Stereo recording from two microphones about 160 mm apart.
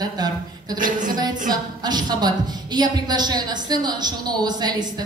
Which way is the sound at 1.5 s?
25° right (ahead or behind).